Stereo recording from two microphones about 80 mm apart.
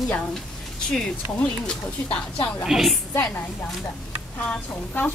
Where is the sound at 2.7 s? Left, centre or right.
Centre.